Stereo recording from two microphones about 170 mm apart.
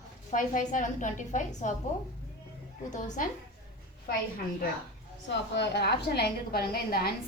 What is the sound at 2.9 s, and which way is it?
Speech, 50° left (ahead or behind).